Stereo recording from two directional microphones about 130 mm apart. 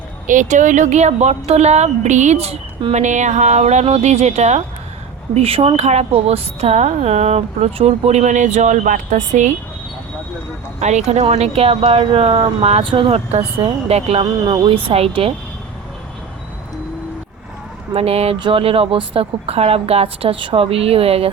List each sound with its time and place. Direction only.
0.3 s speech: 75° right (ahead or behind); by 2.6 s 55° right (ahead or behind)
2.9 s speech: 65° right (ahead or behind)
5.3 s speech: 45° right (ahead or behind); by 9.6 s 65° right (ahead or behind)
10.8 s speech: 60° right (ahead or behind)
14.4 s speech: 35° right (ahead or behind)
17.9 s speech: 50° right (ahead or behind)